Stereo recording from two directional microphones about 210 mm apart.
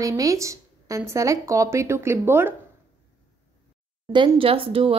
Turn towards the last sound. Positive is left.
turn(degrees=-25)  # may be behind; listen again after turning